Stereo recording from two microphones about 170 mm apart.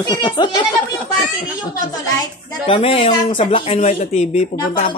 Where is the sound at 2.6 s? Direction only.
35° left (ahead or behind).